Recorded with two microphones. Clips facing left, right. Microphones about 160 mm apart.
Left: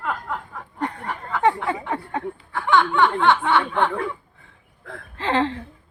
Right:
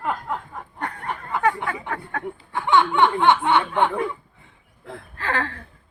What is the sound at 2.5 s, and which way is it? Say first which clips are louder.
Speech: even; 20° right (ahead or behind).